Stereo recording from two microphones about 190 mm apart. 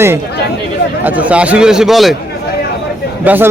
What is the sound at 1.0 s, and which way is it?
Speech, 10° right (ahead or behind).